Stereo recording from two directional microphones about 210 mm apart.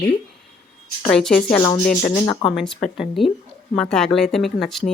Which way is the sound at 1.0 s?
5° left (ahead or behind).